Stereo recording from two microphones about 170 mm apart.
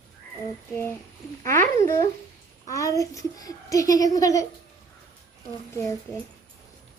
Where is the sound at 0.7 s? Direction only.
10° left (ahead or behind).